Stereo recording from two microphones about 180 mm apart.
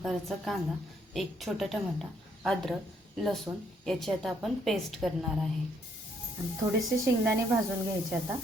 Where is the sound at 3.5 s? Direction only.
10° right (ahead or behind).